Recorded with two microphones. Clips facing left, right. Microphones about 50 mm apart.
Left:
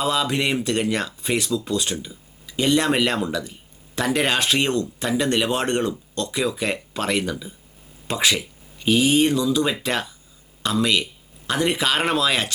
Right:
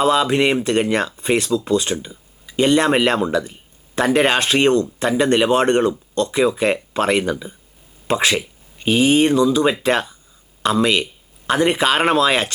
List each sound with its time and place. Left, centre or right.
0.0 s speech: centre
1.1 s speech: centre
10.8 s a sound: centre
11.5 s speech: centre